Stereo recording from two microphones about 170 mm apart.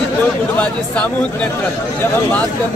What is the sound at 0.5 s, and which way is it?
Speech, 5° left (ahead or behind).